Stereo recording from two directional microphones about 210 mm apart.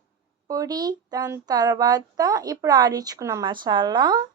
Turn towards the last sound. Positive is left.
turn(degrees=-20)  # may be behind; listen again after turning